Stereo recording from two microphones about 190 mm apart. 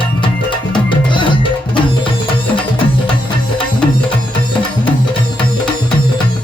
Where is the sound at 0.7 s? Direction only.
25° left (ahead or behind).